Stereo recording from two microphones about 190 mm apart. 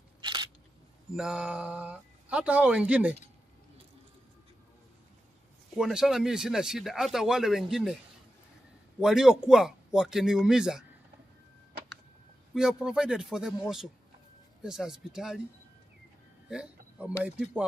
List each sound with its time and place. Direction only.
0.2 s single-lens reflex camera: 25° right (ahead or behind)
1.1 s speech: 5° right (ahead or behind)
5.8 s speech: centre (ahead or behind)
9.0 s speech: 5° right (ahead or behind)
12.5 s speech: 5° right (ahead or behind)
16.4 s speech: 5° right (ahead or behind)